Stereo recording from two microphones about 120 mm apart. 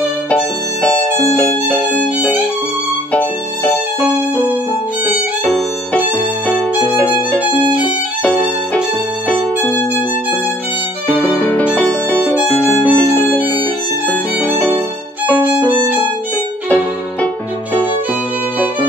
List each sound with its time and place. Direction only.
0.8 s violin: 10° left (ahead or behind)
2.1 s violin: 15° right (ahead or behind)
3.1 s music: 15° left (ahead or behind)
11.1 s violin: 15° left (ahead or behind)
11.7 s music: 15° left (ahead or behind)
12.9 s violin: 15° left (ahead or behind)
16.6 s music: 10° left (ahead or behind)